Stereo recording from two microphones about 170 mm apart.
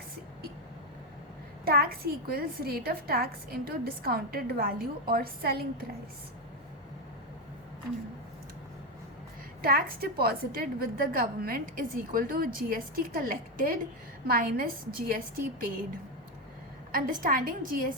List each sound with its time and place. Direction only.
1.6 s a woman's voice: 65° right (ahead or behind)
9.6 s a woman's voice: 60° right (ahead or behind)
16.9 s a woman's voice: 55° right (ahead or behind)